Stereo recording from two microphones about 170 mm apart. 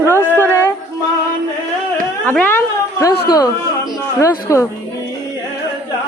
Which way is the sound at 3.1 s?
25° left (ahead or behind).